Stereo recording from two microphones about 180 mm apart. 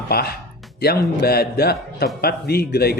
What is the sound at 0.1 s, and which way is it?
Speech, 60° left (ahead or behind).